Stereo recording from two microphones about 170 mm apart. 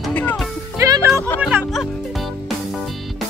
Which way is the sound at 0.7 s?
20° right (ahead or behind).